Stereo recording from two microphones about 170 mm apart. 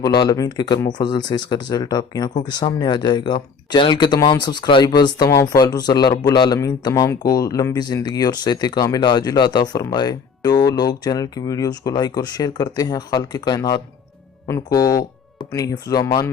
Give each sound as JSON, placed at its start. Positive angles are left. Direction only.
{"t": 0.0, "sound": "speech", "side_deg": 25}